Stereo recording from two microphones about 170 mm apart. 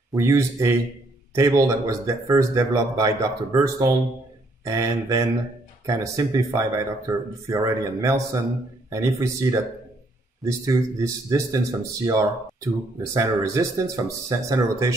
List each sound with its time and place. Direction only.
0.1 s speech: 20° right (ahead or behind)